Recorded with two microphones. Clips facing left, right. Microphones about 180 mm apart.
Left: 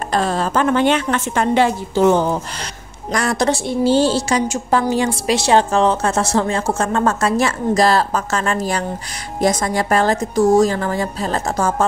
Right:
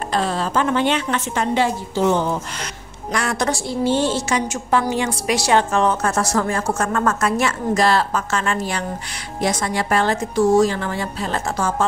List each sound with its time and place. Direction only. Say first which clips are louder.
0.1 s a woman's voice: left 3 dB; 45° left (ahead or behind)
3.1 s a woman's voice: left 4 dB; 40° left (ahead or behind)